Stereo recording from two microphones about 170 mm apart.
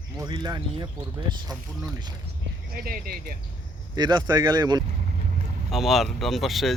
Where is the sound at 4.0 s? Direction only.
25° right (ahead or behind).